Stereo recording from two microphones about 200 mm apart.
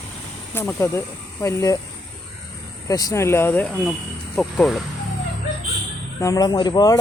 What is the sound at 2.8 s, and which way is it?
Speech, 15° left (ahead or behind).